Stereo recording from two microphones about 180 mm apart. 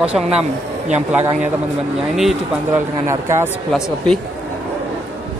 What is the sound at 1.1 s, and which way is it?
A man's voice, 10° right (ahead or behind).